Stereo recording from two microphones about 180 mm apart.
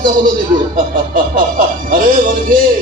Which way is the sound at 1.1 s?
50° right (ahead or behind).